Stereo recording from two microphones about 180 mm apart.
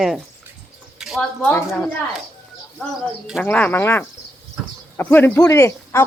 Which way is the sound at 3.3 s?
5° left (ahead or behind).